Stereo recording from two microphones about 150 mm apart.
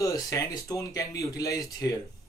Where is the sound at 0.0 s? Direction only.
25° left (ahead or behind).